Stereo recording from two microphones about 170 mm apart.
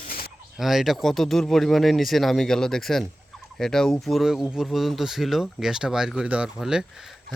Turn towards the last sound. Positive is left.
turn(degrees=-5)  # may be behind; listen again after turning